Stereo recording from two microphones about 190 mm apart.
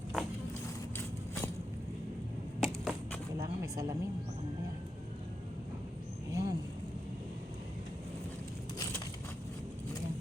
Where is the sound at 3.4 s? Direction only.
15° right (ahead or behind).